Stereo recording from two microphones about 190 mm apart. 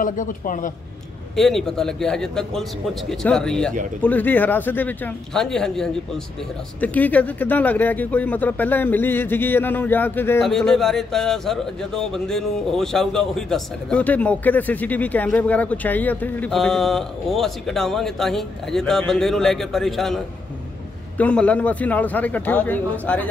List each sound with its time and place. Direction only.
0.0 s a man's voice: 45° left (ahead or behind)
1.3 s speech: centre (ahead or behind)
21.2 s speech: 5° left (ahead or behind)